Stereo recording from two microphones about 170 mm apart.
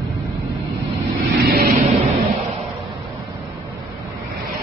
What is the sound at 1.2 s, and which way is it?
Vehicle, 65° right (ahead or behind).